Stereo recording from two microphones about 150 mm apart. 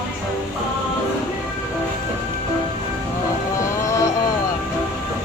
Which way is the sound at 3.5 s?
20° left (ahead or behind).